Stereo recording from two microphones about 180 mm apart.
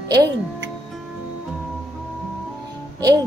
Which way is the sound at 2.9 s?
20° right (ahead or behind).